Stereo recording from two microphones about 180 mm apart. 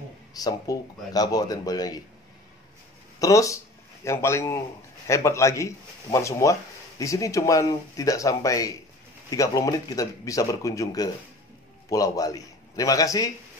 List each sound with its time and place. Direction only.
0.3 s speech: 20° left (ahead or behind)
3.2 s speech: 20° left (ahead or behind)